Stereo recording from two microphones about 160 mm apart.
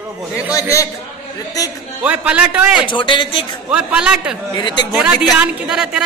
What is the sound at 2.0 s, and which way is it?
Speech, 10° right (ahead or behind).